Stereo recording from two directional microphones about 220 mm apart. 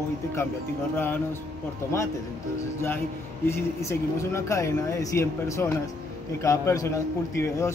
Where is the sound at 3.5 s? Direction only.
15° left (ahead or behind).